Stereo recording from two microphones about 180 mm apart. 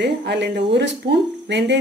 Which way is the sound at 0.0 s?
75° right (ahead or behind).